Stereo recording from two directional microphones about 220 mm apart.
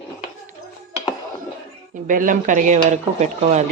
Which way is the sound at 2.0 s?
35° right (ahead or behind).